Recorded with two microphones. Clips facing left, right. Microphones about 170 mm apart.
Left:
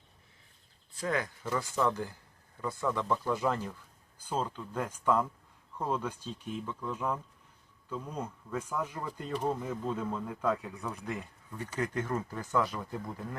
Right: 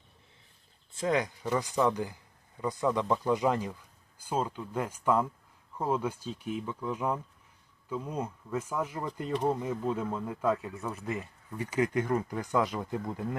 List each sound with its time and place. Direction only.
0.9 s speech: 20° right (ahead or behind)